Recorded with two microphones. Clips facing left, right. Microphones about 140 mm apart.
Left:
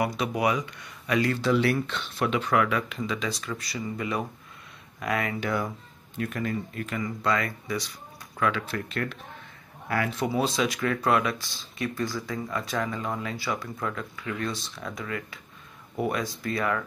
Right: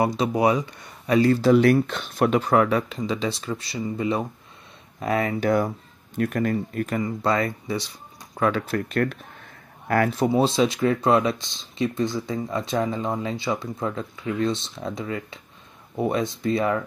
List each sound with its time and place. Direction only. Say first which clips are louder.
0.0 s speech: right 5 dB; 30° right (ahead or behind)
5.4 s speech: right 7 dB; 45° right (ahead or behind)
7.0 s speech: right 3 dB; 30° right (ahead or behind)
8.4 s speech: right 5 dB; 40° right (ahead or behind)
10.2 s speech: right 5 dB; 30° right (ahead or behind)